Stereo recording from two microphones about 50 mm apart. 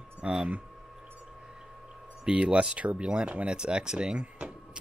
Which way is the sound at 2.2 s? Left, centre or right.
Centre.